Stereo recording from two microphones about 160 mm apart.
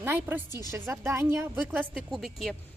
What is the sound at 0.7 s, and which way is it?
Speech, 15° right (ahead or behind).